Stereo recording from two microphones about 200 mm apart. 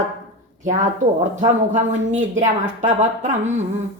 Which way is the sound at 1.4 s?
35° right (ahead or behind).